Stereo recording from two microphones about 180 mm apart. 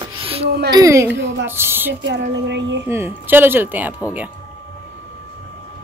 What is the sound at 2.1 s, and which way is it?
Speech, 75° right (ahead or behind).